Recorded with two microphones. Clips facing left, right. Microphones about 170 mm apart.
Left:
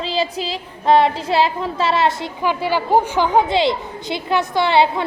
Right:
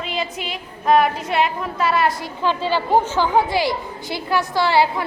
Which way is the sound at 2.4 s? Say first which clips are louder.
Left 1 dB; 10° left (ahead or behind).